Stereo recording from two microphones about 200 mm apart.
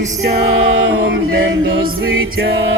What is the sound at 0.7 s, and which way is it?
Music, 75° right (ahead or behind).